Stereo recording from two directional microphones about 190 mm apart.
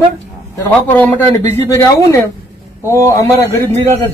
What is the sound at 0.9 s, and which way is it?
Speech, 10° left (ahead or behind).